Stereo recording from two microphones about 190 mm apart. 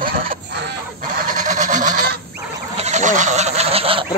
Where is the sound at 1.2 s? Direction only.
40° right (ahead or behind).